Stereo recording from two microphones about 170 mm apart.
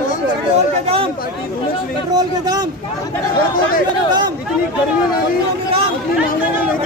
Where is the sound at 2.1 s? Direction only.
25° right (ahead or behind).